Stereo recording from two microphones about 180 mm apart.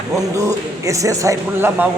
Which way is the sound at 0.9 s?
15° right (ahead or behind).